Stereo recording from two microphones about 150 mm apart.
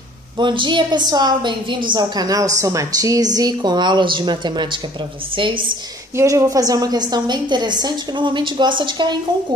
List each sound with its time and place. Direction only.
0.4 s a woman's voice: 30° right (ahead or behind)
6.1 s a woman's voice: 20° right (ahead or behind)